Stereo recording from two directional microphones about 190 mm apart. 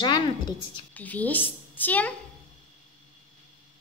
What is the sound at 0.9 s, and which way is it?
A child's voice, 10° left (ahead or behind).